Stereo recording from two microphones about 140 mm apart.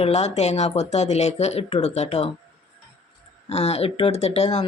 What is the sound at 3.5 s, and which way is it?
Speech, 50° left (ahead or behind).